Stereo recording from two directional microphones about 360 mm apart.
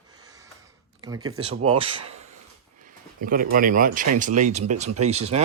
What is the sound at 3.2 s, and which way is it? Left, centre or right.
Speech, right.